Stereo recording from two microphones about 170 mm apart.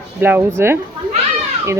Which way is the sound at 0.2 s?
10° right (ahead or behind).